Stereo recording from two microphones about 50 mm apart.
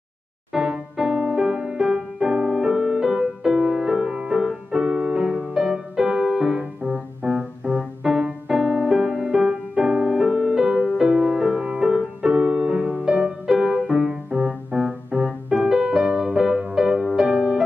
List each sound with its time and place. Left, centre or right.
0.5 s music: centre
6.9 s piano: centre
11.0 s music: centre
14.3 s piano: right
15.2 s music: centre